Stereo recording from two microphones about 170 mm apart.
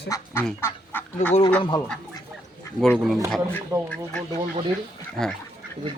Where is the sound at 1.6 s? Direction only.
25° left (ahead or behind).